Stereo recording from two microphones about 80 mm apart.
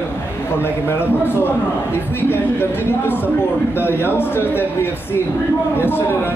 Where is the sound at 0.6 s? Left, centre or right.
Left.